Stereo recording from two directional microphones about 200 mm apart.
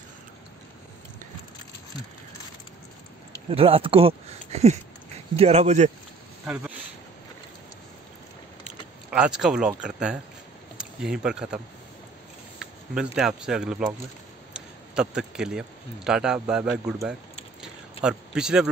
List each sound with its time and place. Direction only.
3.4 s speech: 30° right (ahead or behind)
6.4 s speech: 5° right (ahead or behind)
9.1 s speech: 5° right (ahead or behind)
12.5 s a sound: 5° right (ahead or behind)
13.4 s speech: 5° right (ahead or behind)
17.6 s a sound: 5° right (ahead or behind)